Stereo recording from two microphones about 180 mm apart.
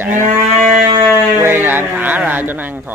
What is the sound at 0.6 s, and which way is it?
Music, 45° right (ahead or behind).